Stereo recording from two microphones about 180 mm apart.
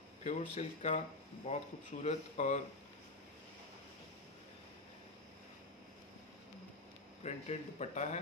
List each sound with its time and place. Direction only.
0.2 s speech: 40° left (ahead or behind)
7.2 s speech: 40° left (ahead or behind)